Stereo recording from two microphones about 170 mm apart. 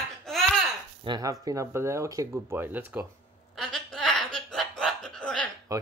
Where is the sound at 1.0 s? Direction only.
25° right (ahead or behind).